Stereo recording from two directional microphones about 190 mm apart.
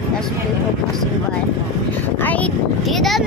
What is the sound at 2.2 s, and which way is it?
Speech, 10° left (ahead or behind).